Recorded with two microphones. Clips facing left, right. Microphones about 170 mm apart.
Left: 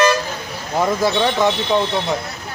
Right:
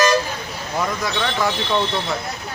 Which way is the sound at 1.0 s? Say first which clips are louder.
Left 6 dB; 25° left (ahead or behind).